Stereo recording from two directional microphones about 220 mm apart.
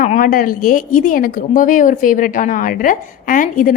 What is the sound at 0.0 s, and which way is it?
Speech, 35° left (ahead or behind).